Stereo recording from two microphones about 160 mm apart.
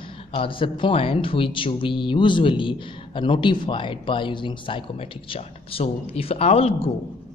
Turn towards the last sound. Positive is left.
turn(degrees=40)  # may be behind; listen again after turning